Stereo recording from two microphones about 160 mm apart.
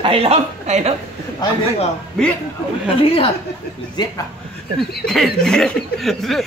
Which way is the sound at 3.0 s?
35° left (ahead or behind).